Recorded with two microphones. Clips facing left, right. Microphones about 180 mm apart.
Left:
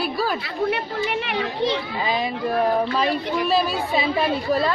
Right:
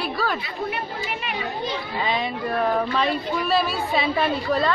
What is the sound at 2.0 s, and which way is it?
A woman's voice, centre (ahead or behind).